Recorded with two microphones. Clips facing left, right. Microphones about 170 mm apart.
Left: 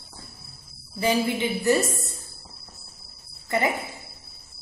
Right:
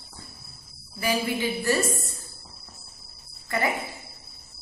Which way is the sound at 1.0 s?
20° left (ahead or behind).